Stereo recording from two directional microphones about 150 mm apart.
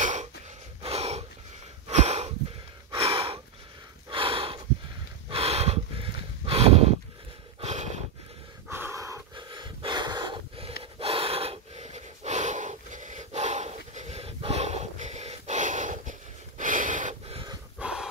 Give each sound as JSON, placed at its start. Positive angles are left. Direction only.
{"t": 0.0, "sound": "gasp", "side_deg": -55}
{"t": 0.8, "sound": "a sound", "side_deg": -45}
{"t": 2.9, "sound": "gasp", "side_deg": -40}
{"t": 4.1, "sound": "snort", "side_deg": -35}
{"t": 7.6, "sound": "a sound", "side_deg": -50}
{"t": 8.6, "sound": "breathing", "side_deg": -15}
{"t": 9.3, "sound": "pant", "side_deg": -30}
{"t": 10.8, "sound": "gasp", "side_deg": -40}
{"t": 17.7, "sound": "dog", "side_deg": -5}